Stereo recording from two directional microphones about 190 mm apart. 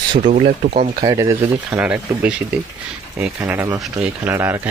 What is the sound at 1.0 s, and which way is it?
Speech, 20° right (ahead or behind).